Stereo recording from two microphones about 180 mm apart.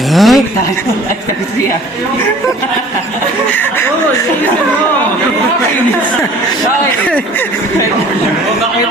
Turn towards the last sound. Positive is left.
turn(degrees=10)  # may be behind; listen again after turning